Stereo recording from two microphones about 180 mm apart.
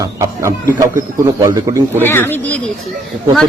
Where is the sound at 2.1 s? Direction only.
10° left (ahead or behind).